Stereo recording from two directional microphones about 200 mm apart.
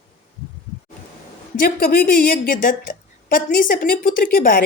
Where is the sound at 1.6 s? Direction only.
45° left (ahead or behind).